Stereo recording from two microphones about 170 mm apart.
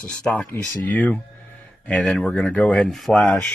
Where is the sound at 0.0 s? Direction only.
10° left (ahead or behind).